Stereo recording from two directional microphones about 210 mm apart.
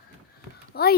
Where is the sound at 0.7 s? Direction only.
50° left (ahead or behind).